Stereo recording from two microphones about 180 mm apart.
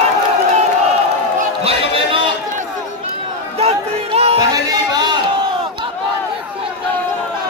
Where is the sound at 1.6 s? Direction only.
30° right (ahead or behind).